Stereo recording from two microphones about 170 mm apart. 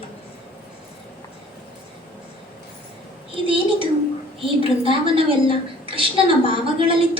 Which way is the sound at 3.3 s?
30° right (ahead or behind).